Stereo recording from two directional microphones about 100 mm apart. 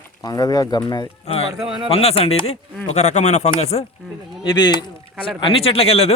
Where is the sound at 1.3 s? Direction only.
85° left.